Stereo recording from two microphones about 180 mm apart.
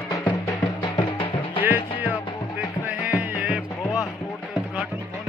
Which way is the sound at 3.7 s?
10° left (ahead or behind).